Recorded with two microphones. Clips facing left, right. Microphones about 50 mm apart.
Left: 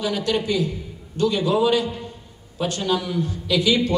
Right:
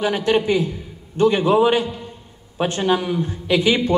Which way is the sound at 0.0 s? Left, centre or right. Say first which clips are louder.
Right 5 dB; right.